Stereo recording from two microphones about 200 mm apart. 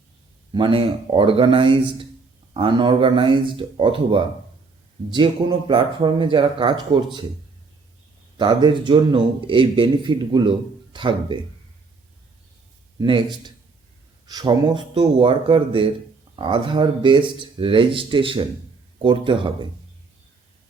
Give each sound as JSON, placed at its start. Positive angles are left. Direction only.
{"t": 0.5, "sound": "a man's voice", "side_deg": -25}
{"t": 8.4, "sound": "a man's voice", "side_deg": -20}
{"t": 13.0, "sound": "a man's voice", "side_deg": -25}
{"t": 14.3, "sound": "a man's voice", "side_deg": -20}